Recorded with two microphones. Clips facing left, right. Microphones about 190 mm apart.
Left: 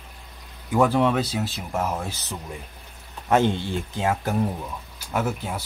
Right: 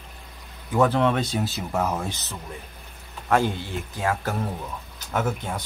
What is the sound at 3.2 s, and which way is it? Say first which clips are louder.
Speech: left 2 dB; 20° left (ahead or behind).